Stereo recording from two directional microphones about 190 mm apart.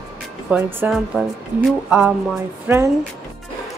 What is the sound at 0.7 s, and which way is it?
Music, 10° right (ahead or behind).